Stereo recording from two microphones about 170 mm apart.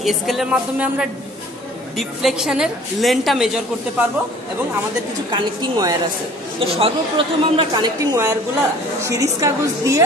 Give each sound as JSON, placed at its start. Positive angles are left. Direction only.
{"t": 0.0, "sound": "a woman's voice", "side_deg": 0}
{"t": 5.3, "sound": "a woman's voice", "side_deg": -20}
{"t": 6.6, "sound": "a woman's voice", "side_deg": -30}